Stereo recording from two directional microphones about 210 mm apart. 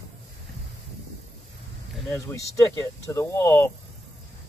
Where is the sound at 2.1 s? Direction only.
15° left (ahead or behind).